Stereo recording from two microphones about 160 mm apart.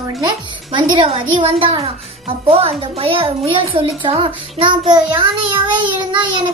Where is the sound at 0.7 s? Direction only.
35° right (ahead or behind).